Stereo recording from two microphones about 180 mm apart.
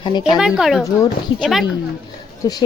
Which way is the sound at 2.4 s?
20° left (ahead or behind).